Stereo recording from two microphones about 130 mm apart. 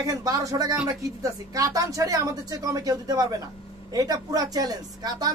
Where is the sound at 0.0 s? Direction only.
25° right (ahead or behind).